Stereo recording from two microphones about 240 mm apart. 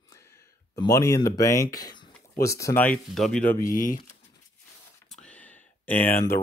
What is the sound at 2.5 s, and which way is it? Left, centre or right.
Speech, centre.